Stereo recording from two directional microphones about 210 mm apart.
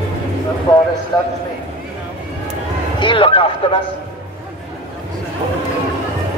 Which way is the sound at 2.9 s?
25° left (ahead or behind).